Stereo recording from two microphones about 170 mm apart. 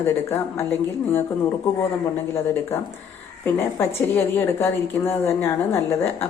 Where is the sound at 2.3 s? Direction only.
15° left (ahead or behind).